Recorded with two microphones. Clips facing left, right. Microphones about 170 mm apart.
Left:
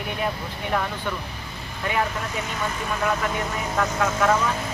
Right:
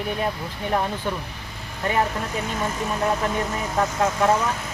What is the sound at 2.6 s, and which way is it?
Speech, 30° right (ahead or behind).